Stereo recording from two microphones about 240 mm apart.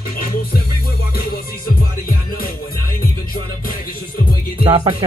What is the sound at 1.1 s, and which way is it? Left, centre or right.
Music, left.